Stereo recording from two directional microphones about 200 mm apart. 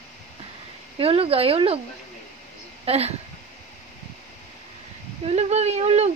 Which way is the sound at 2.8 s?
30° right (ahead or behind).